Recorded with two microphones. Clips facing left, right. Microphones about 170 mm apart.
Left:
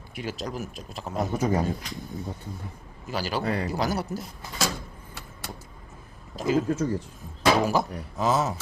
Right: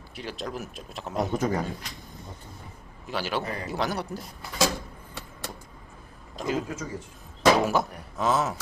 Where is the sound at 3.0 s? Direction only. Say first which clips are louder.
Left 2 dB; centre (ahead or behind).